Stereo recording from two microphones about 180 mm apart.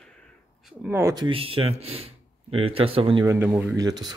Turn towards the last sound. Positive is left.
turn(degrees=-20)  # may be behind; listen again after turning